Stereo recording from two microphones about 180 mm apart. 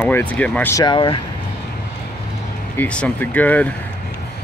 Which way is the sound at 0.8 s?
25° left (ahead or behind).